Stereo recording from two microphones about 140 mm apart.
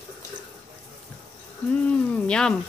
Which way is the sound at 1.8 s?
10° left (ahead or behind).